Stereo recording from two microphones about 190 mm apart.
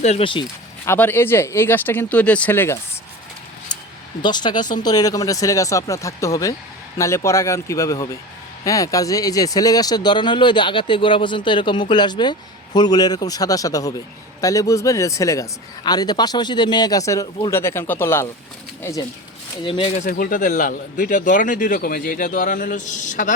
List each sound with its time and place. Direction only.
0.0 s speech: 30° left (ahead or behind)
0.9 s a man's voice: 10° left (ahead or behind)
4.2 s a man's voice: 25° left (ahead or behind)
20.0 s speech: 50° left (ahead or behind)